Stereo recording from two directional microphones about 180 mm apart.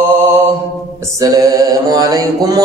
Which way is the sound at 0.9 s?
20° right (ahead or behind).